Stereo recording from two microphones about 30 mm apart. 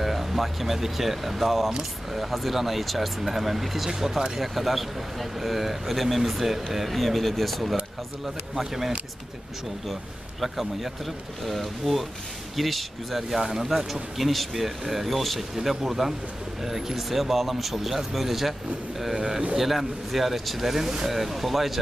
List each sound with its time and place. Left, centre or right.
0.0 s speech: centre
8.5 s speech: centre
10.4 s speech: centre
13.4 s speech: centre
14.1 s speech: centre
15.5 s speech: centre